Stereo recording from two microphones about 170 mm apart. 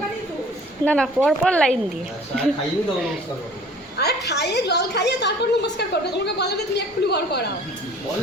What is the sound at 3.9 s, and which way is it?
A woman's voice, 75° left (ahead or behind).